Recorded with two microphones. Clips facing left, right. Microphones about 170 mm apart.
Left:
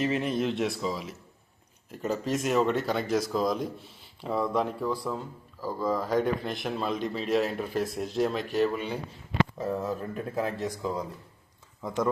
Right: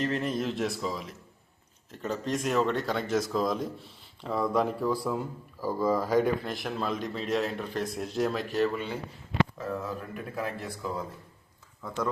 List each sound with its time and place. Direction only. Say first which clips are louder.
0.0 s speech: left 2 dB; 5° left (ahead or behind)
8.7 s speech: left 1 dB; 15° left (ahead or behind)
9.6 s speech: left 4 dB; 25° left (ahead or behind)